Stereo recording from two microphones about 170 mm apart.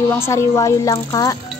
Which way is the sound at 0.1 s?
15° left (ahead or behind).